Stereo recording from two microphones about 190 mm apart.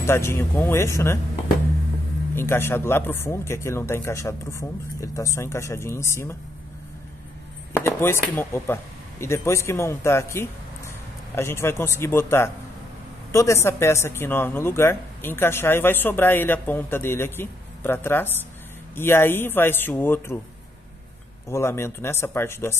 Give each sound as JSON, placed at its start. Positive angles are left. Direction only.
{"t": 0.0, "sound": "speech", "side_deg": 15}
{"t": 2.3, "sound": "speech", "side_deg": 10}
{"t": 7.7, "sound": "speech", "side_deg": 10}
{"t": 21.5, "sound": "speech", "side_deg": 15}